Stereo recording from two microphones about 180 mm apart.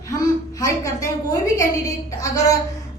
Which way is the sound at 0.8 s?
15° left (ahead or behind).